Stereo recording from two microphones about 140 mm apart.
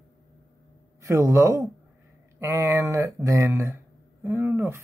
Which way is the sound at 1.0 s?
20° right (ahead or behind).